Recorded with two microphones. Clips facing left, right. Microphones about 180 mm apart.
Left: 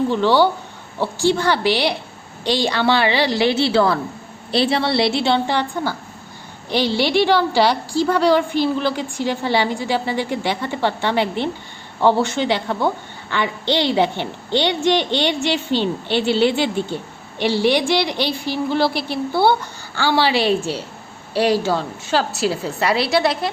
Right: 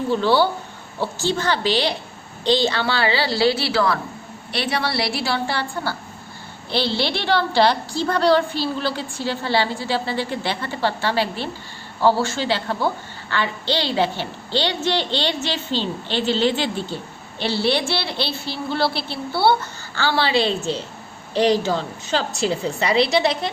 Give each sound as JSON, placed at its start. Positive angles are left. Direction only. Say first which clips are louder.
{"t": 0.1, "sound": "speech", "louder": "right 1 dB", "side_deg": -10}
{"t": 1.2, "sound": "a woman's voice", "louder": "left 5 dB", "side_deg": 10}